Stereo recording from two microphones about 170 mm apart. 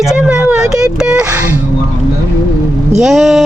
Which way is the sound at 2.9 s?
Centre (ahead or behind).